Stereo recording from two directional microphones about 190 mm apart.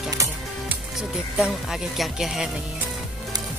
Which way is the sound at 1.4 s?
Centre (ahead or behind).